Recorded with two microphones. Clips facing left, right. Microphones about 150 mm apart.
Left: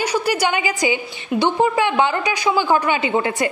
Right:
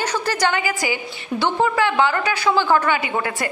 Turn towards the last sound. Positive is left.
turn(degrees=20)  # may be behind; listen again after turning